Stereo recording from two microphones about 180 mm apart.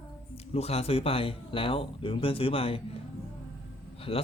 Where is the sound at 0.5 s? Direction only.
35° left (ahead or behind).